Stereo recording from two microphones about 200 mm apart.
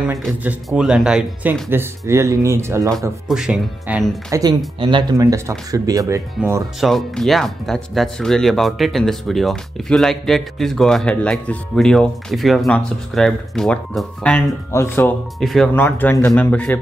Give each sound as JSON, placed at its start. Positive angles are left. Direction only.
{"t": 0.4, "sound": "speech", "side_deg": -5}
{"t": 3.3, "sound": "speech", "side_deg": -5}
{"t": 4.3, "sound": "speech", "side_deg": -20}
{"t": 6.8, "sound": "speech", "side_deg": 0}
{"t": 15.4, "sound": "speech", "side_deg": 0}